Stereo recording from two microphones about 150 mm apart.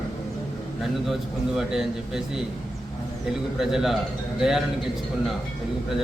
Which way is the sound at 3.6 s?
5° right (ahead or behind).